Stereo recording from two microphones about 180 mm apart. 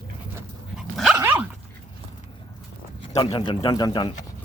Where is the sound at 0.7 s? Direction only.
5° right (ahead or behind).